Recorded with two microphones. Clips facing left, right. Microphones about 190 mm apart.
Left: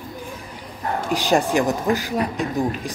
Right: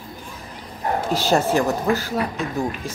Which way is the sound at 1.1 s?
15° left (ahead or behind).